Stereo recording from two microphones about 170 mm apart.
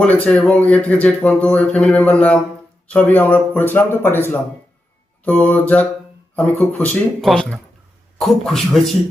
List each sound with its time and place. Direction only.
0.0 s speech: 5° left (ahead or behind)
5.2 s a man's voice: 10° left (ahead or behind)